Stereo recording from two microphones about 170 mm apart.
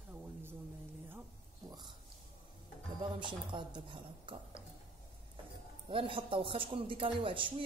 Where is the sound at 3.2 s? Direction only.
30° right (ahead or behind).